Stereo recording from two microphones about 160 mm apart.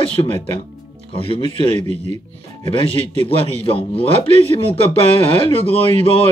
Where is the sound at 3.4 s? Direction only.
35° left (ahead or behind).